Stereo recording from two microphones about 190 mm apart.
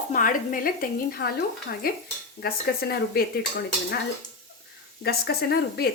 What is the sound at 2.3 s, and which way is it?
Sizzle, 55° left (ahead or behind).